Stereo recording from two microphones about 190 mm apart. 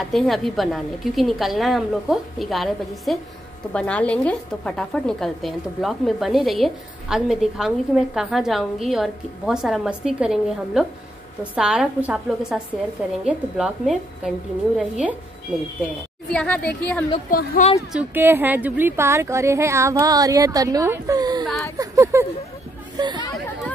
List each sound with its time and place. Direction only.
0.1 s a woman's voice: centre (ahead or behind)
16.3 s speech: 5° left (ahead or behind)
17.3 s speech: 50° left (ahead or behind)
17.9 s a woman's voice: 10° right (ahead or behind)